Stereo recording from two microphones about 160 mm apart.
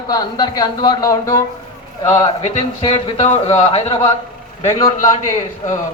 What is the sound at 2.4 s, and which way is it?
A man's voice, 40° left (ahead or behind).